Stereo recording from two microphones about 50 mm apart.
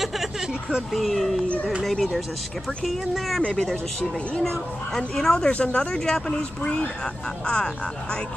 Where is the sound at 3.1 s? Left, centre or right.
Centre.